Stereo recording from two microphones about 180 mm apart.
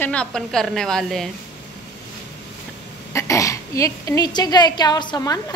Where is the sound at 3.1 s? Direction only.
15° left (ahead or behind).